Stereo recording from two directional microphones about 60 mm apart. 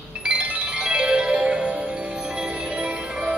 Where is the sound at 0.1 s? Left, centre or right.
Centre.